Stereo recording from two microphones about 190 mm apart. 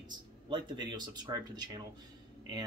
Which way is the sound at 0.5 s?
25° right (ahead or behind).